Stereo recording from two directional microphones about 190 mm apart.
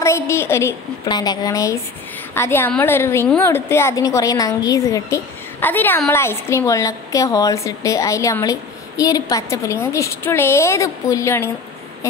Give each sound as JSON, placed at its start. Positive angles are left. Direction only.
{"t": 0.0, "sound": "a woman's voice", "side_deg": 15}